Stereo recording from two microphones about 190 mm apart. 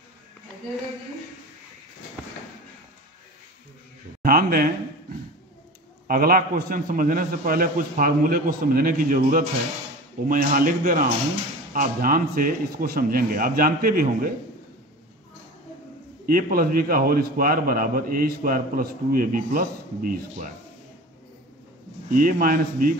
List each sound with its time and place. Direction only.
4.2 s a sound: 50° right (ahead or behind)
6.0 s a man's voice: 50° right (ahead or behind)
16.3 s a man's voice: 50° right (ahead or behind)
22.1 s a man's voice: 45° right (ahead or behind)